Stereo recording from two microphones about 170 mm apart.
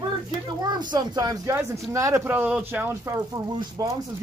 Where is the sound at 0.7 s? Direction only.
25° right (ahead or behind).